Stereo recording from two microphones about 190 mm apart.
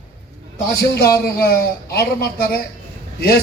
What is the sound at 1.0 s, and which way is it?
A man's voice, 55° left (ahead or behind).